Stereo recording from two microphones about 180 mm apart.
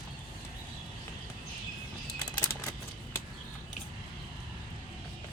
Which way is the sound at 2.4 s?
15° left (ahead or behind).